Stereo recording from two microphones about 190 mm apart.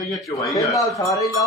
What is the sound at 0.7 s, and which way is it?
Speech, 15° left (ahead or behind).